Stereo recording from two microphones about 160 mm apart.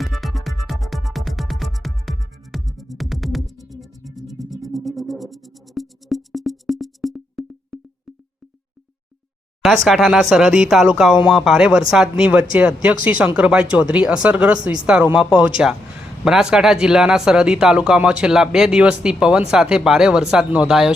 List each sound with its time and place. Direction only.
0.0 s music: centre (ahead or behind)
9.6 s speech: centre (ahead or behind)